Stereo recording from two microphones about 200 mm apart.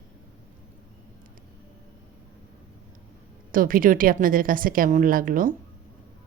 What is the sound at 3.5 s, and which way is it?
Speech, 45° right (ahead or behind).